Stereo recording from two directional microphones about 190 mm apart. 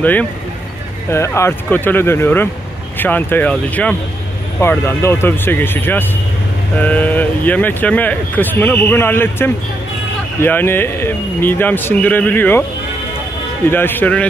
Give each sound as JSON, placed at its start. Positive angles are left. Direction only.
{"t": 0.0, "sound": "speech", "side_deg": 10}
{"t": 13.7, "sound": "speech", "side_deg": 10}